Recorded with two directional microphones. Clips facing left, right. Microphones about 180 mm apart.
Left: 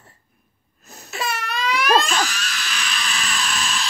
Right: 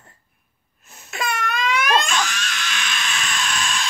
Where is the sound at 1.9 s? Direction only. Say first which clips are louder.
Left 5 dB; 40° left (ahead or behind).